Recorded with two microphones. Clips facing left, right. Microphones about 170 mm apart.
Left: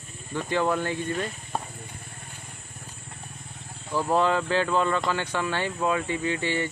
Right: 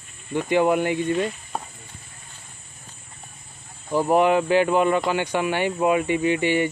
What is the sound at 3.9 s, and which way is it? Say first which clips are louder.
Speech: right 5 dB; 15° right (ahead or behind).